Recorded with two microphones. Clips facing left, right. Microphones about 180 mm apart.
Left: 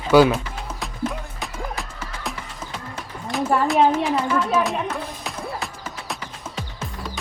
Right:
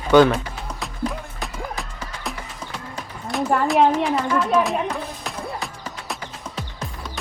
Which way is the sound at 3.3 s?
Centre (ahead or behind).